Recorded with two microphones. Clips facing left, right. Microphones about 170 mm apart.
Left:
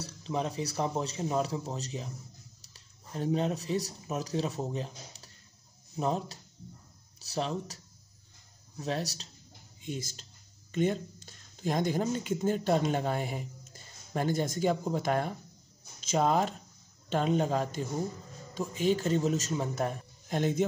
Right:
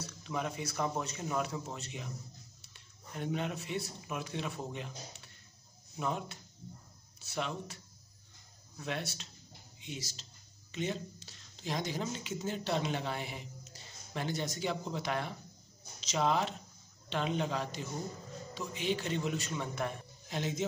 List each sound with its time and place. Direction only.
0.0 s speech: 30° left (ahead or behind)
9.8 s a man's voice: 50° left (ahead or behind)